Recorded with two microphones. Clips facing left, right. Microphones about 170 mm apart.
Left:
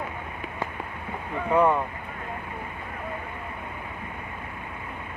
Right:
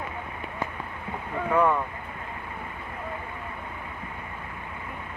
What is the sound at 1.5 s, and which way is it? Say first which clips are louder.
Speech: left 2 dB; 15° left (ahead or behind).